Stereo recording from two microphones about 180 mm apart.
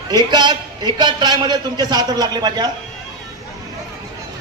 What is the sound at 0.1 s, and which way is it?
A man's voice, 25° right (ahead or behind).